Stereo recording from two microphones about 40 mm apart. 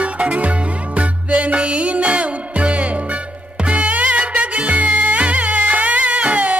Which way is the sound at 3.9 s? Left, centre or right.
Right.